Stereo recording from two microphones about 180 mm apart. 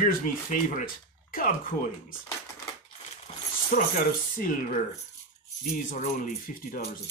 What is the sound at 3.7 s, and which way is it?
Speech, 45° left (ahead or behind).